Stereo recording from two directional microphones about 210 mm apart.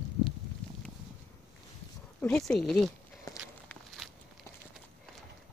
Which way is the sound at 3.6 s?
Centre (ahead or behind).